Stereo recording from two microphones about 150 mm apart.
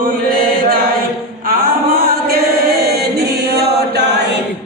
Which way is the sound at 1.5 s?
90° right.